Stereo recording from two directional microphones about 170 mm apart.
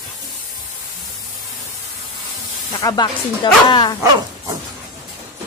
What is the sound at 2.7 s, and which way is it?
Speech, 25° left (ahead or behind).